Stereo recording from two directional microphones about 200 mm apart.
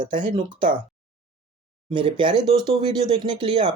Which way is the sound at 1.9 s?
25° right (ahead or behind).